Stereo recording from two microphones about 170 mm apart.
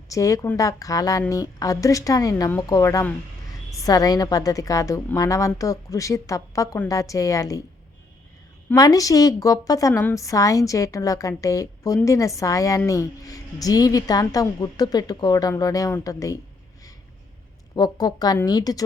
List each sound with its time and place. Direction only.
0.1 s a woman's voice: 20° left (ahead or behind)
8.7 s a woman's voice: 20° left (ahead or behind)
17.7 s a woman's voice: 25° left (ahead or behind)